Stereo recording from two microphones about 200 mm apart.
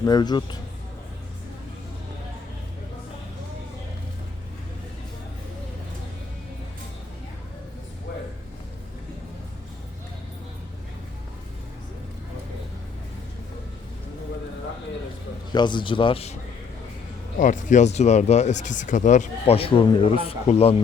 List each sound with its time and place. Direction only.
0.0 s speech: 20° left (ahead or behind)
15.5 s speech: 25° left (ahead or behind)